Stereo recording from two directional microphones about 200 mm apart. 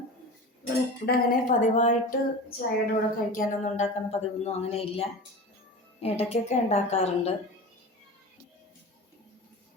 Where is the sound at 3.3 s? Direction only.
35° left (ahead or behind).